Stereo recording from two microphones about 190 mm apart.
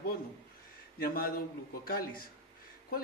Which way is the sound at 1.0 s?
50° left (ahead or behind).